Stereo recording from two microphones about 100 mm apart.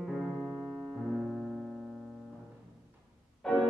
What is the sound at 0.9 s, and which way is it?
Piano, centre (ahead or behind).